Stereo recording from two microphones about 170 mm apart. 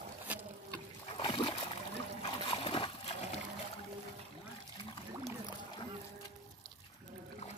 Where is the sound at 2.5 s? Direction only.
35° left (ahead or behind).